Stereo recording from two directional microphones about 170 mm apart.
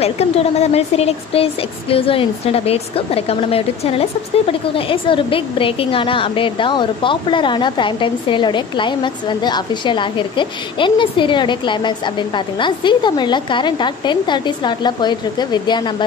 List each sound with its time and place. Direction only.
0.0 s a woman's voice: 35° left (ahead or behind)